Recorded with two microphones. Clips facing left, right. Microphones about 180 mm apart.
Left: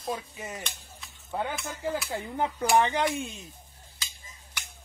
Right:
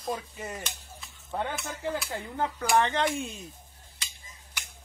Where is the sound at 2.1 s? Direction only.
15° left (ahead or behind).